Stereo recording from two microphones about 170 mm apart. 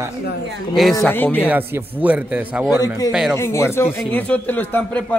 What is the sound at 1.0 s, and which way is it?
Speech, 10° left (ahead or behind).